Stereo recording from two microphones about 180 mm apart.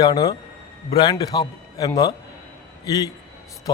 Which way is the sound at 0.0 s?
20° left (ahead or behind).